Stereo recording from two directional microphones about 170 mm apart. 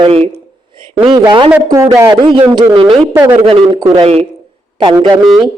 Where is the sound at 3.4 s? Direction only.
35° right (ahead or behind).